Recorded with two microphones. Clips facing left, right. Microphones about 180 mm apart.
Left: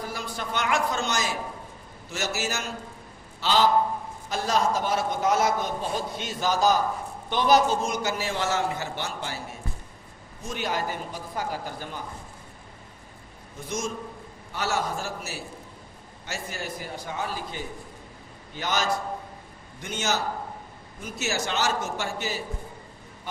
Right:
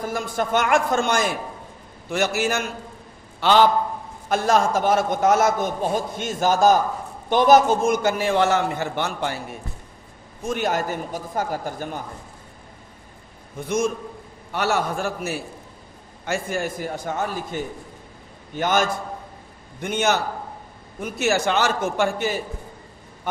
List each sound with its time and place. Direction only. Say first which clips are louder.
0.0 s a man's voice: right 8 dB; 50° right (ahead or behind)
13.6 s a man's voice: right 8 dB; 60° right (ahead or behind)